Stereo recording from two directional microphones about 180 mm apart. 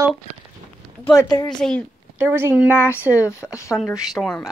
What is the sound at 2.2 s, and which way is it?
Speech, 15° right (ahead or behind).